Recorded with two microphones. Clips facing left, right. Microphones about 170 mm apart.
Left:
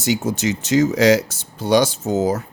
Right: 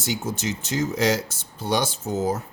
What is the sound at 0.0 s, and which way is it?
Speech, 80° left.